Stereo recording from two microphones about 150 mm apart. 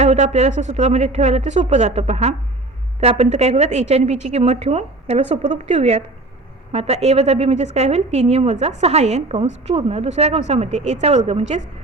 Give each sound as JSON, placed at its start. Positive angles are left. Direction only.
{"t": 0.0, "sound": "a woman's voice", "side_deg": -50}